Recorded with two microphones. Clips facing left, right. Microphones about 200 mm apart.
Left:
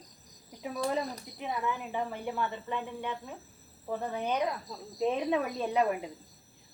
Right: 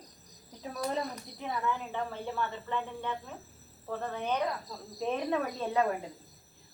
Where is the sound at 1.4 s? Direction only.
15° left (ahead or behind).